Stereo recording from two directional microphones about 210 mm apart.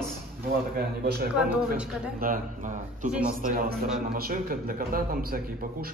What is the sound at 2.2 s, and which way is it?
A man's voice, 40° right (ahead or behind).